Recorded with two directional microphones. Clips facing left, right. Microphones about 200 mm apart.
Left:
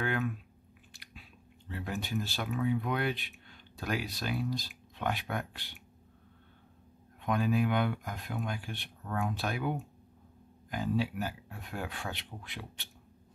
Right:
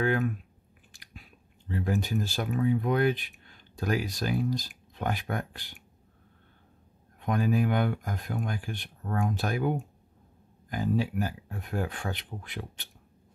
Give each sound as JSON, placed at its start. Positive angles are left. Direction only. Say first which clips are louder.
{"t": 0.0, "sound": "speech", "louder": "right 6 dB", "side_deg": -45}
{"t": 1.7, "sound": "speech", "louder": "right 7 dB", "side_deg": -40}
{"t": 7.2, "sound": "speech", "louder": "right 3 dB", "side_deg": -40}